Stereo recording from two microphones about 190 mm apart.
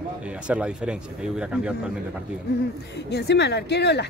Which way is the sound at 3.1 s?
60° left (ahead or behind).